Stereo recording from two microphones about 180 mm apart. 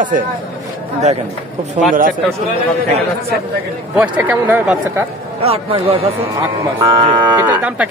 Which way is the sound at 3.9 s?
5° right (ahead or behind).